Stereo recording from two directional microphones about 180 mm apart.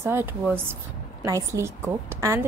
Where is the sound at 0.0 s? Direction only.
15° right (ahead or behind).